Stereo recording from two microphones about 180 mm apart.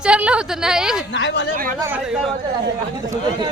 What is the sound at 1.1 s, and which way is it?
Speech, 75° left (ahead or behind).